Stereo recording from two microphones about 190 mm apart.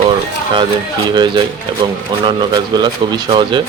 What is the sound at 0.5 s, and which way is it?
Speech, 25° right (ahead or behind).